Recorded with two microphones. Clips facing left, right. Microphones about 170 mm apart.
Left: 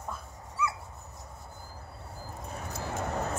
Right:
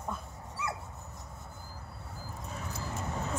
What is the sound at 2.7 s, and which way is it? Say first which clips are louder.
Vehicle: left 5 dB; 65° left (ahead or behind).